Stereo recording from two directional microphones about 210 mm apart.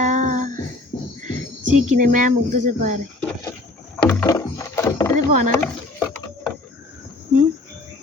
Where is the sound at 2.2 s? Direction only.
35° right (ahead or behind).